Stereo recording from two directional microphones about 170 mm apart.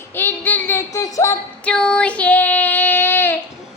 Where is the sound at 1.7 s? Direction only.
5° left (ahead or behind).